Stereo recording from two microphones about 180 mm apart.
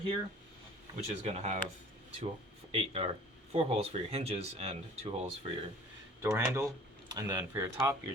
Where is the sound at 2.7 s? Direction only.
35° right (ahead or behind).